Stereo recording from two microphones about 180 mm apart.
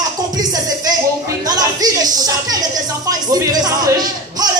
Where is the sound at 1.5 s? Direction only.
20° right (ahead or behind).